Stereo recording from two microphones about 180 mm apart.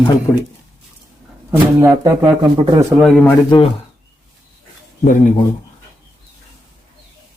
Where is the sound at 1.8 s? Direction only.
20° right (ahead or behind).